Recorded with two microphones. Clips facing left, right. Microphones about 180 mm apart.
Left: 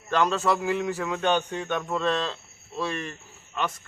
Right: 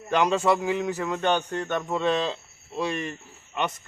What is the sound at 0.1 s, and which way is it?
Speech, 15° right (ahead or behind).